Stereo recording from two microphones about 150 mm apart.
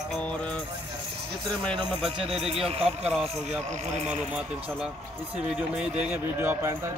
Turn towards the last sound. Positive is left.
turn(degrees=-15)  # may be behind; listen again after turning